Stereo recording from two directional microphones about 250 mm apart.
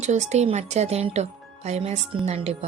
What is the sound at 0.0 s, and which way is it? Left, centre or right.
Speech, right.